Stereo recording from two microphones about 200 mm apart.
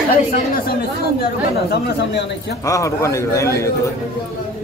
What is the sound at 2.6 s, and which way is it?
A man's voice, 15° left (ahead or behind).